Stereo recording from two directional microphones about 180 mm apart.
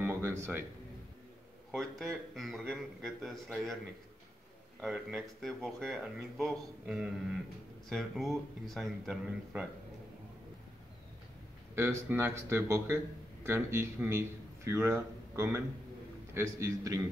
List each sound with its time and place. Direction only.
0.0 s a sound: 15° right (ahead or behind)
1.7 s speech: centre (ahead or behind)
4.8 s speech: centre (ahead or behind)
11.7 s a man's voice: 15° right (ahead or behind)